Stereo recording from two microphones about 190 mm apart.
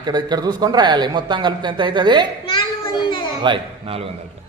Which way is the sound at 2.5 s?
25° left (ahead or behind).